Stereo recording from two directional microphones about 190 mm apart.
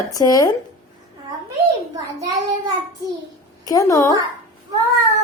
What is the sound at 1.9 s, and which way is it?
Speech, 20° right (ahead or behind).